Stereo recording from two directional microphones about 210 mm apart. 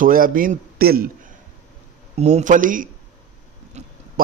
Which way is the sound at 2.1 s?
30° right (ahead or behind).